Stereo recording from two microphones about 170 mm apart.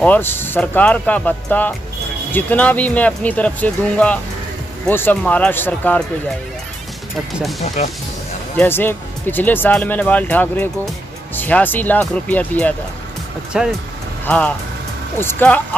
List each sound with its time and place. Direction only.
0.0 s speech: 10° left (ahead or behind)
7.6 s speech: 40° left (ahead or behind)
8.5 s speech: 10° left (ahead or behind)
13.5 s speech: 5° right (ahead or behind)
14.2 s speech: 10° left (ahead or behind)